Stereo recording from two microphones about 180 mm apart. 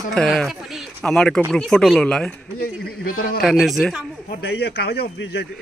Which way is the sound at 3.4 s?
Centre (ahead or behind).